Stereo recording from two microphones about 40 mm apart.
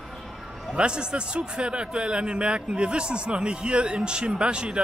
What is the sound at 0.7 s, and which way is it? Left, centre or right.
Speech, right.